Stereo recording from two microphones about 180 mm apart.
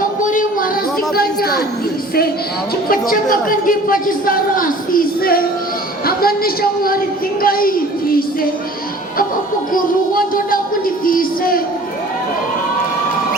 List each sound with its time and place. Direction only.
0.2 s music: 45° left (ahead or behind)
1.1 s speech: 55° left (ahead or behind)
2.9 s a man's voice: 50° left (ahead or behind)
9.7 s music: 50° left (ahead or behind)